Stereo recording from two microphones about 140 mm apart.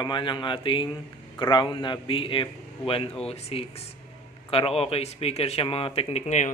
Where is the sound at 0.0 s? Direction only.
35° left (ahead or behind).